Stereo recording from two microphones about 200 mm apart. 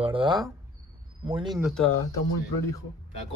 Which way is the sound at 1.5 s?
Centre (ahead or behind).